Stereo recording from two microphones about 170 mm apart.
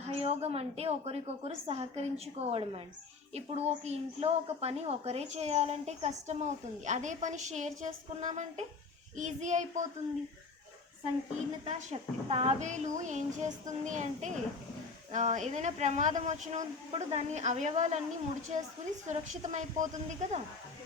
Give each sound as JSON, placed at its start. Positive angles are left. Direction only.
{"t": 0.0, "sound": "a woman's voice", "side_deg": -35}
{"t": 11.6, "sound": "a woman's voice", "side_deg": -40}